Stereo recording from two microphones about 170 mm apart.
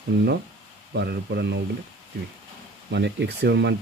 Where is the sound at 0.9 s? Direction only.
75° right (ahead or behind).